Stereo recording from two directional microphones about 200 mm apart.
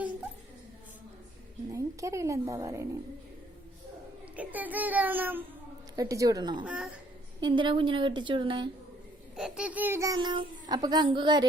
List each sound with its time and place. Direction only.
1.7 s a woman's voice: 15° right (ahead or behind)
4.4 s a child's voice: 10° right (ahead or behind)
6.7 s a man's voice: 5° right (ahead or behind)
7.4 s a child's voice: 25° right (ahead or behind)
9.3 s a child's voice: 5° right (ahead or behind); by 11.4 s 25° right (ahead or behind)